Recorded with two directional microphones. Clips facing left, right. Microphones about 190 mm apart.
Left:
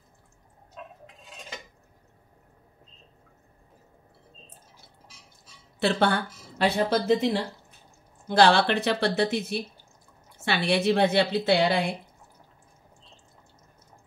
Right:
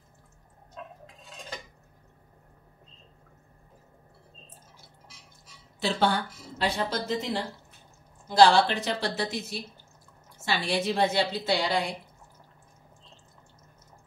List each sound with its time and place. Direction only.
5.8 s speech: 60° left (ahead or behind)
8.3 s a woman's voice: 60° left (ahead or behind)